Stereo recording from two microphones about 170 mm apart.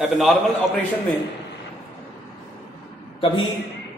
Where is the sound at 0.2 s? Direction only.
Centre (ahead or behind).